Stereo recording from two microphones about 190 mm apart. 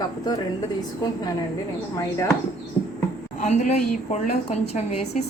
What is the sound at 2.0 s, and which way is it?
Speech, 15° left (ahead or behind).